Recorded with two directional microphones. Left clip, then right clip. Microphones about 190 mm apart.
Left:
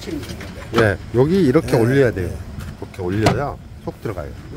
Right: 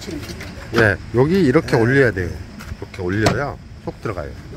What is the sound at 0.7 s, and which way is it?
Speech, 10° left (ahead or behind).